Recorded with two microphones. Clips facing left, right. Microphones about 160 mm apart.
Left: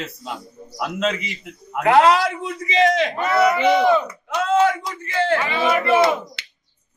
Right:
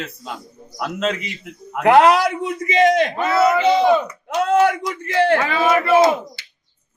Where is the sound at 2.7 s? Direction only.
50° right (ahead or behind).